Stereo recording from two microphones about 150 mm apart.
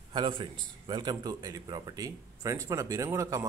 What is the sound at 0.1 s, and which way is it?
A man's voice, 35° right (ahead or behind).